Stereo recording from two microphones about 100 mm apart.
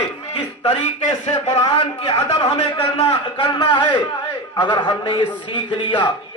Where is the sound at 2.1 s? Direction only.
65° left (ahead or behind).